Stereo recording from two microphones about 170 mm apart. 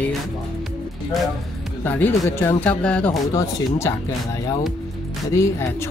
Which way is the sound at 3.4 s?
20° left (ahead or behind).